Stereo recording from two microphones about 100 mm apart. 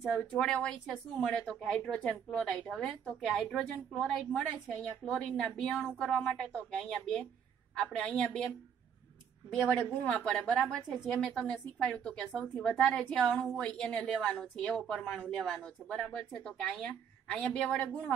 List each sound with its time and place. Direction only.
0.1 s a woman's voice: 10° left (ahead or behind)
5.8 s speech: 20° left (ahead or behind)
6.0 s a woman's voice: 5° left (ahead or behind)
9.5 s a woman's voice: 5° left (ahead or behind)